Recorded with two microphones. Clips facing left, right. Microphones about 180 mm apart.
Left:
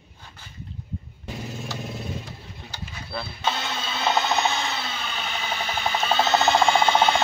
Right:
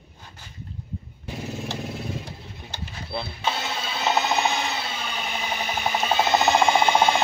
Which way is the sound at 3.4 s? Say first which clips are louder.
Left 1 dB; 10° right (ahead or behind).